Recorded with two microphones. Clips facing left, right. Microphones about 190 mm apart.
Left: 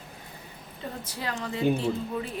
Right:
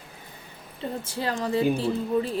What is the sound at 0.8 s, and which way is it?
A woman's voice, 30° right (ahead or behind).